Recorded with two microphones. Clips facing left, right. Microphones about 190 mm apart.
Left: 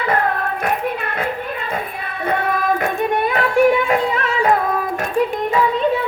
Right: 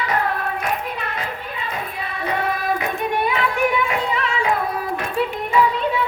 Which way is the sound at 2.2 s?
55° left (ahead or behind).